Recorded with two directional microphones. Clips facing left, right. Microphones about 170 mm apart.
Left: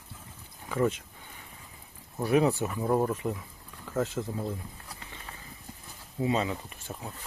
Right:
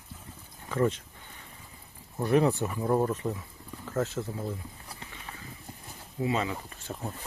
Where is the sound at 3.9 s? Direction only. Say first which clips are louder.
Left 1 dB; 15° left (ahead or behind).